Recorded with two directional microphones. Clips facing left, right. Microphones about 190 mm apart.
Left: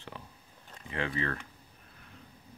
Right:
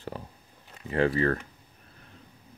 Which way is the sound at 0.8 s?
40° right (ahead or behind).